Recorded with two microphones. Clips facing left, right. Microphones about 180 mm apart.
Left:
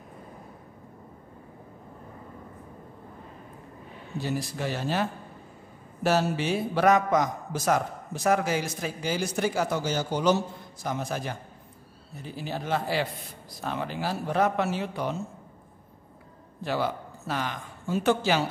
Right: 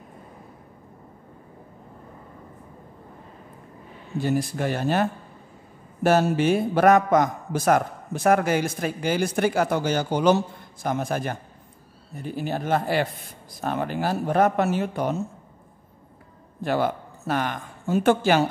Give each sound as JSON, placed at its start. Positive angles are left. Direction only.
{"t": 4.2, "sound": "a man's voice", "side_deg": -50}
{"t": 16.6, "sound": "speech", "side_deg": -50}